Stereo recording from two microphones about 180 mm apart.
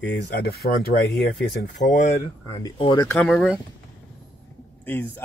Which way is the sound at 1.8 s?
50° left (ahead or behind).